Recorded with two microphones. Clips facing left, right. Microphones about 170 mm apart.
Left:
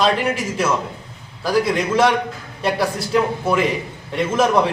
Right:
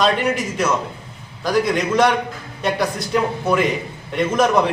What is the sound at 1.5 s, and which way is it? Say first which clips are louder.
A man's voice: even; 5° left (ahead or behind).